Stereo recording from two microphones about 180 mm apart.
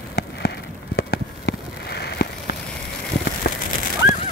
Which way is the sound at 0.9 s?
65° left (ahead or behind).